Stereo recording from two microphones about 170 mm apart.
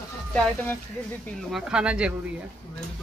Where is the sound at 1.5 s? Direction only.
5° right (ahead or behind).